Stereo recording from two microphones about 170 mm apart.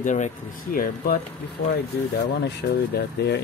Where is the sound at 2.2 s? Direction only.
80° left.